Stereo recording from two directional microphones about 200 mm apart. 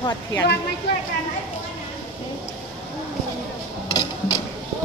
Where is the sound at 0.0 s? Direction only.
15° left (ahead or behind).